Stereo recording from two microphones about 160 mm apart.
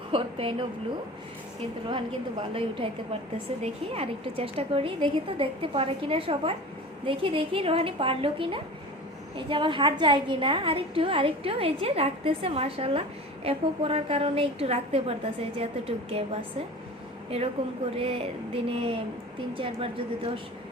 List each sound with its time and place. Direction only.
0.1 s a woman's voice: 35° right (ahead or behind)
2.5 s a woman's voice: 35° right (ahead or behind)
17.9 s a woman's voice: 35° right (ahead or behind)